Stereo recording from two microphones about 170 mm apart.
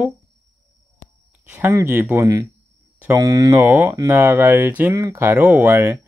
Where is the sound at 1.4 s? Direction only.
10° right (ahead or behind).